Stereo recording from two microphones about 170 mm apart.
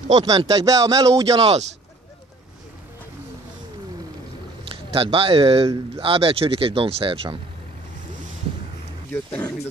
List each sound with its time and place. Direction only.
0.2 s speech: 25° right (ahead or behind)
1.4 s speech: 35° right (ahead or behind)
4.9 s speech: 35° right (ahead or behind)
9.1 s speech: 10° left (ahead or behind)